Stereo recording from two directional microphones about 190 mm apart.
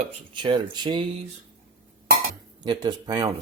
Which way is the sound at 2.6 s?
20° right (ahead or behind).